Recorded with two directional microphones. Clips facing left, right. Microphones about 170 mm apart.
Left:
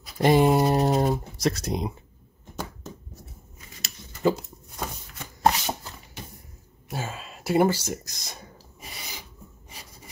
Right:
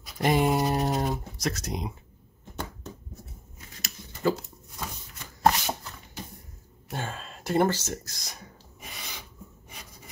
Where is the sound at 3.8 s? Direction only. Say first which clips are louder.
Left 3 dB; 20° left (ahead or behind).